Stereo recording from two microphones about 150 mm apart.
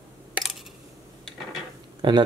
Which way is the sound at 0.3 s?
Centre (ahead or behind).